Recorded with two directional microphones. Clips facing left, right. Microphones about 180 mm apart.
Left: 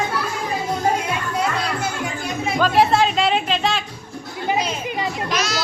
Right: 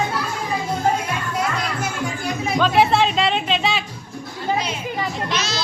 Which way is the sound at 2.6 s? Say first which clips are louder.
Even; centre (ahead or behind).